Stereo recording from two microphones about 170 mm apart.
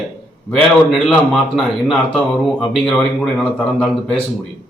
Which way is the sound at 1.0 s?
Centre (ahead or behind).